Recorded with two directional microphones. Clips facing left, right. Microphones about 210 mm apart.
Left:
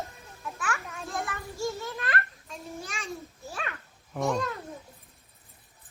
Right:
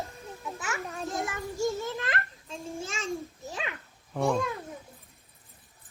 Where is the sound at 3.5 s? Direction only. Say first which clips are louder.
Even; 15° right (ahead or behind).